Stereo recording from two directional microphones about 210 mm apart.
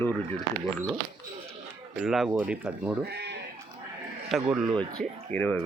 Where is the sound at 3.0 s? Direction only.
55° right (ahead or behind).